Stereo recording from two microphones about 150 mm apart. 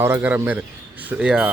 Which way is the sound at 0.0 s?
15° right (ahead or behind).